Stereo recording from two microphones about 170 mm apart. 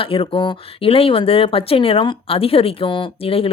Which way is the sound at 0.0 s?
30° left (ahead or behind).